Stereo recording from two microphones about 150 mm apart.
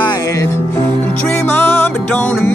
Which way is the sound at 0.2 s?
20° left (ahead or behind).